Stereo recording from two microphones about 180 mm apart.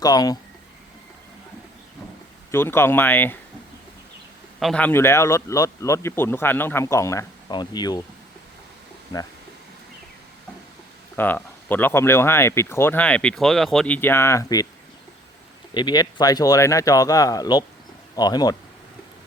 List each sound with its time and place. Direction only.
0.0 s speech: 20° left (ahead or behind)
2.5 s speech: 15° left (ahead or behind)
4.6 s speech: 5° left (ahead or behind); by 8.0 s 20° left (ahead or behind)
11.2 s speech: 10° left (ahead or behind)
15.7 s speech: 25° left (ahead or behind)